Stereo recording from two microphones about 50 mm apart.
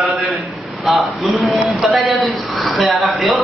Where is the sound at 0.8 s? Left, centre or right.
Centre.